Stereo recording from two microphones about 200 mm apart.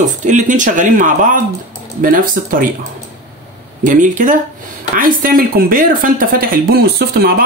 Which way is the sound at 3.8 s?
40° right (ahead or behind).